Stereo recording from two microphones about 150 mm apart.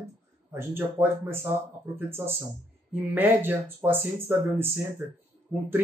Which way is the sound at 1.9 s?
15° right (ahead or behind).